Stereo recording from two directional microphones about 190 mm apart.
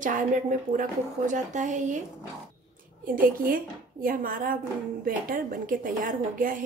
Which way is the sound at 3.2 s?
50° right (ahead or behind).